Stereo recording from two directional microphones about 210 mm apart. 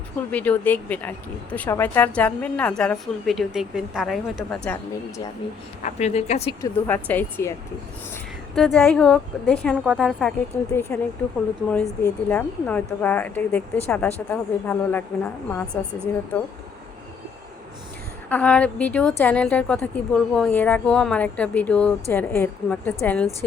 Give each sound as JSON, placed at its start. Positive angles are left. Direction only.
{"t": 0.3, "sound": "speech", "side_deg": 5}
{"t": 5.8, "sound": "speech", "side_deg": 30}
{"t": 6.6, "sound": "speech", "side_deg": 10}
{"t": 8.5, "sound": "a woman's voice", "side_deg": 0}
{"t": 10.7, "sound": "speech", "side_deg": 15}
{"t": 18.3, "sound": "speech", "side_deg": 5}